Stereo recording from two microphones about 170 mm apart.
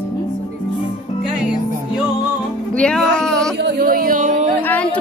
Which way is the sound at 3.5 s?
80° right.